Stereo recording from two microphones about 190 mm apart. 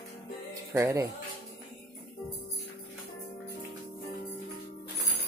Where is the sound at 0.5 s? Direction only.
15° right (ahead or behind).